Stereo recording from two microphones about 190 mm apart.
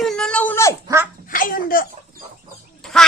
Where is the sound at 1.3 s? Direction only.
45° left (ahead or behind).